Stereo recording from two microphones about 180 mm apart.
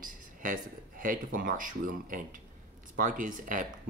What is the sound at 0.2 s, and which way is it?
Speech, 45° right (ahead or behind).